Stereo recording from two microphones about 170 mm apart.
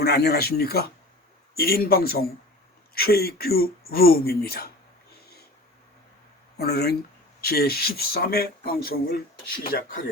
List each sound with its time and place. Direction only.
0.0 s speech: 70° left (ahead or behind)
6.6 s speech: 70° left (ahead or behind)